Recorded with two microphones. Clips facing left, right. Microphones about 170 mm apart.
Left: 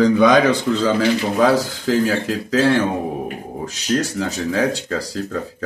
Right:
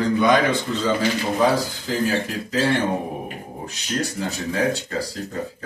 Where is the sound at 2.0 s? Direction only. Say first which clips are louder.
Left 3 dB; 90° left.